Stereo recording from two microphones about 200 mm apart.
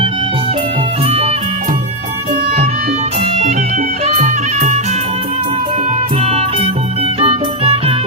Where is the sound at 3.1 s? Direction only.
30° right (ahead or behind).